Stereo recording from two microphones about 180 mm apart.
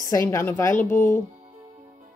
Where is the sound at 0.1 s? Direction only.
15° left (ahead or behind).